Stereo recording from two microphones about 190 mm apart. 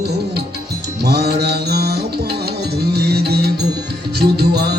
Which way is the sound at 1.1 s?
55° right (ahead or behind).